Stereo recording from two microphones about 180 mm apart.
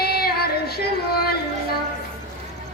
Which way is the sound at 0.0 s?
60° left (ahead or behind).